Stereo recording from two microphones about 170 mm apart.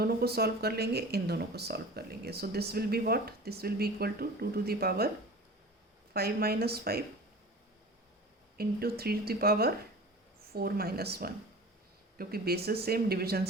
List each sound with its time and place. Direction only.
0.0 s speech: 70° right (ahead or behind)
6.1 s speech: 65° right (ahead or behind)
8.5 s speech: 65° right (ahead or behind)